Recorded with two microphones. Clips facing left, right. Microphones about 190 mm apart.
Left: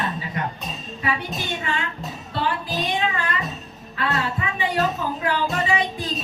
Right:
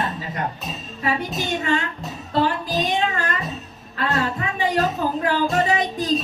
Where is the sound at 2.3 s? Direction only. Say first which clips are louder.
Right 5 dB; 45° right (ahead or behind).